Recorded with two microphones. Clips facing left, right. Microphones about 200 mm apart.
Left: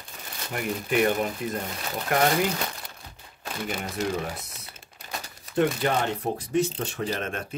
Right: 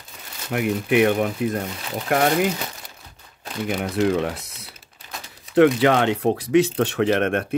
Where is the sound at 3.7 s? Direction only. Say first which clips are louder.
Right 9 dB; 65° right (ahead or behind).